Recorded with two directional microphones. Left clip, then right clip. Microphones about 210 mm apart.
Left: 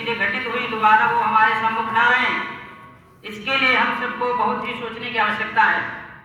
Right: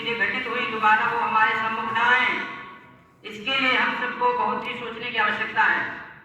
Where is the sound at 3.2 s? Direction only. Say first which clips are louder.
Left 4 dB; 15° left (ahead or behind).